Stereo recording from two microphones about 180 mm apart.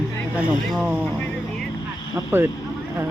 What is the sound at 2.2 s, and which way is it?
Speech, 10° right (ahead or behind).